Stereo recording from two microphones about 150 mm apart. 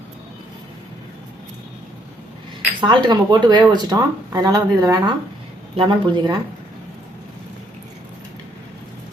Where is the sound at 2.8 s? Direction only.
30° right (ahead or behind).